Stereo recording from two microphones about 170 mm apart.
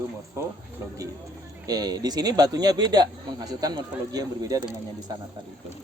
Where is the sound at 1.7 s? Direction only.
20° right (ahead or behind).